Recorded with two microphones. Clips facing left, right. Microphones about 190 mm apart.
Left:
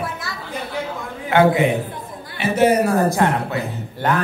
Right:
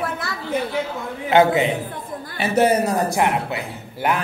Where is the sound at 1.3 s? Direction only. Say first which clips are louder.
Left 1 dB; 25° right (ahead or behind).